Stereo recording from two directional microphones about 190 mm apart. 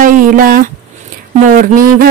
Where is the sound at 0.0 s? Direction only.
45° right (ahead or behind).